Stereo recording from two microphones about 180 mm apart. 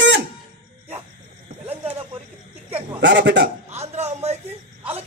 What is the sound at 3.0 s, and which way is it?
Speech, 75° right (ahead or behind).